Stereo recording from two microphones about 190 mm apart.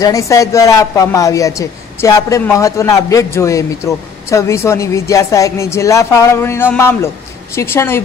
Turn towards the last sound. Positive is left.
turn(degrees=15)  # may be behind; listen again after turning